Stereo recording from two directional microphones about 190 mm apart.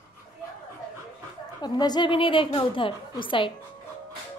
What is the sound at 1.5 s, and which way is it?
A woman's voice, 20° left (ahead or behind).